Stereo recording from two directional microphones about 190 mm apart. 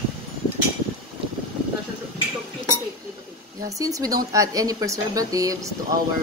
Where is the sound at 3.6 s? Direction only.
15° right (ahead or behind).